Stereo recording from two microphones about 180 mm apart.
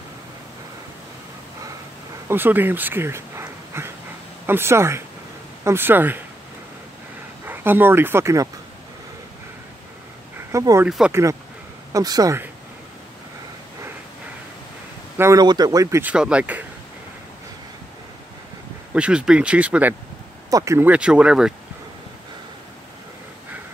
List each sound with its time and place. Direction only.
2.2 s speech: 10° right (ahead or behind)
7.4 s speech: 10° right (ahead or behind)
10.5 s speech: 15° right (ahead or behind)
10.9 s speech: 5° right (ahead or behind)
11.9 s speech: 20° right (ahead or behind)
15.1 s speech: 15° right (ahead or behind)
18.9 s speech: 5° right (ahead or behind)